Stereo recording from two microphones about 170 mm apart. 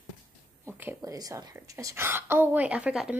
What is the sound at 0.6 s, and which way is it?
A woman's voice, 15° right (ahead or behind).